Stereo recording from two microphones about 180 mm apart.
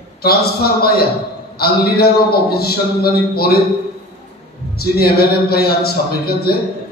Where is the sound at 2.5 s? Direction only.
60° left (ahead or behind).